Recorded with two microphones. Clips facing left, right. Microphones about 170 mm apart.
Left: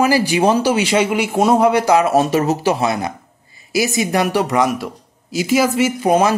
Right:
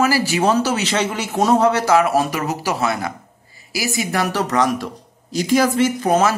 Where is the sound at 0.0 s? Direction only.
15° left (ahead or behind).